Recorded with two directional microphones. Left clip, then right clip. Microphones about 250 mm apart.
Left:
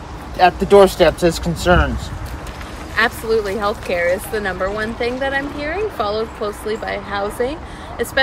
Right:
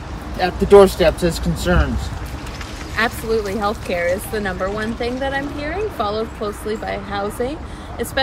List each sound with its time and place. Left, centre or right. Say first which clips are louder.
0.4 s speech: left 1 dB; left
3.0 s speech: left 3 dB; centre